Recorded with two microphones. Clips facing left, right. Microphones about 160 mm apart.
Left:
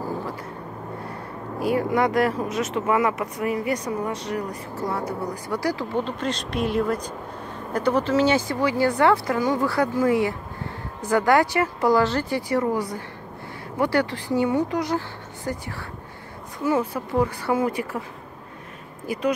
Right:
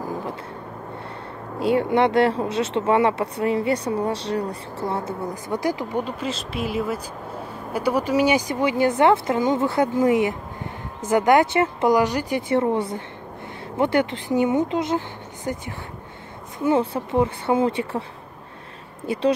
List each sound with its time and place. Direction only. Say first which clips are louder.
1.6 s speech: right 3 dB; 25° right (ahead or behind)
19.1 s speech: right 3 dB; 25° right (ahead or behind)